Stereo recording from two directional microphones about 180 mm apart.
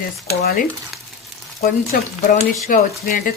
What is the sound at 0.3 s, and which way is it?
Speech, 60° left (ahead or behind).